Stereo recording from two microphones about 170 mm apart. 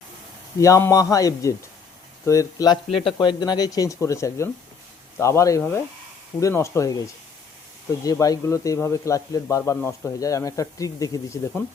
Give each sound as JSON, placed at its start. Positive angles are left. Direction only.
{"t": 0.6, "sound": "a man's voice", "side_deg": 20}
{"t": 8.0, "sound": "a man's voice", "side_deg": 20}